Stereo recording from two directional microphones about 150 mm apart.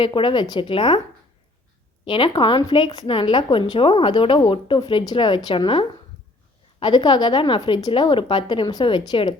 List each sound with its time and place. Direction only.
0.0 s a woman's voice: 35° left (ahead or behind)
2.0 s a woman's voice: 35° left (ahead or behind)